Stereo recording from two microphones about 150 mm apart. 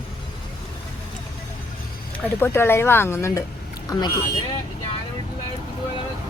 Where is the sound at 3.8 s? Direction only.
30° left (ahead or behind).